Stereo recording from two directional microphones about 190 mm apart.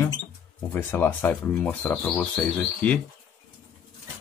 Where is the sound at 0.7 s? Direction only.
10° left (ahead or behind).